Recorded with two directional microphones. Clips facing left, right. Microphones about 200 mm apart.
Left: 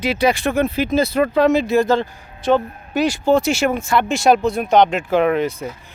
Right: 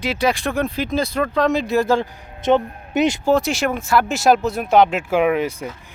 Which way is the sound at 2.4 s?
20° right (ahead or behind).